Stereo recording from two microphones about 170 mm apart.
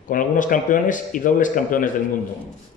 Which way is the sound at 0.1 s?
50° left (ahead or behind).